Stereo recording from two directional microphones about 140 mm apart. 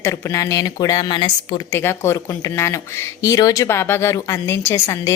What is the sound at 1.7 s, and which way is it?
Speech, 15° left (ahead or behind).